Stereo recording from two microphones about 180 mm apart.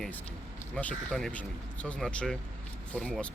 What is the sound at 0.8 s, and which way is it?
A man's voice, 5° left (ahead or behind).